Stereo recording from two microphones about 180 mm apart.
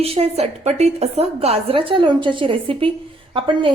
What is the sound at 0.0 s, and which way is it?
A woman's voice, 35° right (ahead or behind).